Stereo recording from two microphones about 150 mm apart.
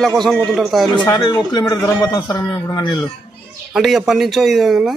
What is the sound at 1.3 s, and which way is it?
A man's voice, 30° left (ahead or behind).